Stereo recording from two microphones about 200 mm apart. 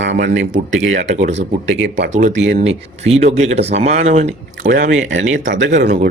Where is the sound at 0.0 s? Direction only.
60° right (ahead or behind).